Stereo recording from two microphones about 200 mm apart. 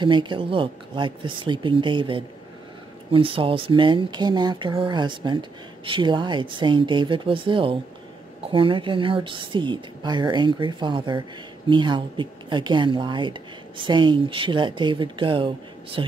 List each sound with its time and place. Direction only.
0.0 s speech: 25° right (ahead or behind)